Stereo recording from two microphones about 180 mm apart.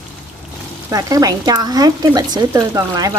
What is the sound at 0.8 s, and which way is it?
A woman's voice, 20° right (ahead or behind).